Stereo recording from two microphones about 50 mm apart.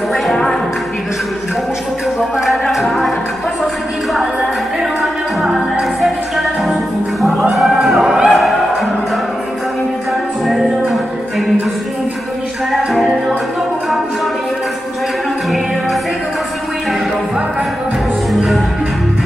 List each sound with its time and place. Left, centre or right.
0.3 s music: centre
2.1 s a sound: centre
2.7 s music: centre
5.4 s music: centre
5.9 s music: centre
10.4 s music: centre
12.7 s music: centre